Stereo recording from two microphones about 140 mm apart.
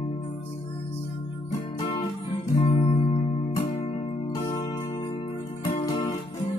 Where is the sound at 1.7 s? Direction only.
40° left (ahead or behind).